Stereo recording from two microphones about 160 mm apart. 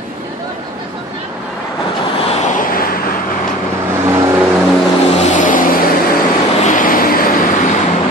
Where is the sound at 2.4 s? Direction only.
60° left (ahead or behind).